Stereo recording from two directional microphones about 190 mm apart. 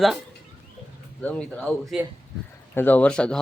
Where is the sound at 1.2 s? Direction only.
5° left (ahead or behind).